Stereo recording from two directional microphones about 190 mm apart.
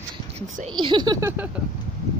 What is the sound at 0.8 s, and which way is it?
Speech, 25° right (ahead or behind).